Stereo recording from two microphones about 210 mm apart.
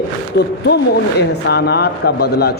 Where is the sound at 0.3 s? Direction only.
55° left (ahead or behind).